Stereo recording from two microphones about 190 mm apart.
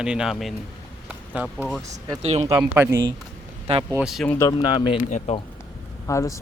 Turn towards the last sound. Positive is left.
turn(degrees=15)  # may be behind; listen again after turning